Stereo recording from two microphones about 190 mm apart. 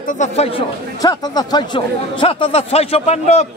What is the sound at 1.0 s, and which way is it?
A man's voice, 20° left (ahead or behind).